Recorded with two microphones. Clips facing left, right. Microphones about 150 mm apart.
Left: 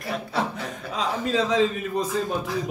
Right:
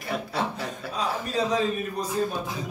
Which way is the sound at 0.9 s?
90° left.